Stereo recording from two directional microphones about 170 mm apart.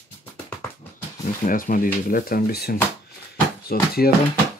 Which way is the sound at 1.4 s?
55° left (ahead or behind).